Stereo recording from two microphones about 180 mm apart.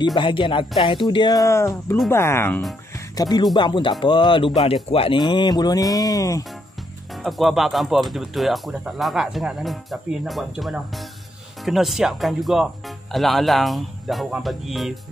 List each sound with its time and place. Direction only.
0.0 s speech: 25° left (ahead or behind)
7.2 s speech: centre (ahead or behind)